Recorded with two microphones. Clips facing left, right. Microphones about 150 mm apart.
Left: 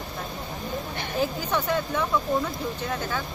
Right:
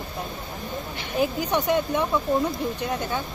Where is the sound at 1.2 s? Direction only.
20° right (ahead or behind).